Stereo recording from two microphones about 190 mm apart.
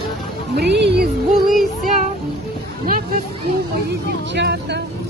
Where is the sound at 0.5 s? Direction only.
60° right (ahead or behind).